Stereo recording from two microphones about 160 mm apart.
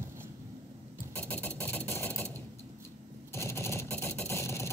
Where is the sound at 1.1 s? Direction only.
10° left (ahead or behind).